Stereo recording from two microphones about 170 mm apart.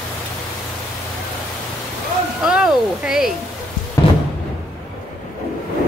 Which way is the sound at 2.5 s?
5° right (ahead or behind).